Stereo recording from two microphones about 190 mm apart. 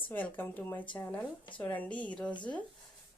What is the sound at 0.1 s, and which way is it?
A woman's voice, 10° left (ahead or behind).